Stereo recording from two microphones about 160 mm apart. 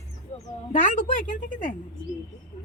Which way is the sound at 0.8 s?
60° left (ahead or behind).